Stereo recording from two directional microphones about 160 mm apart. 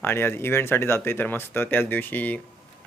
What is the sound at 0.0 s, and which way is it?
Speech, 15° left (ahead or behind).